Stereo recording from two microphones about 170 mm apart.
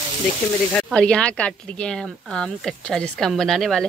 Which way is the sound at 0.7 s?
5° left (ahead or behind).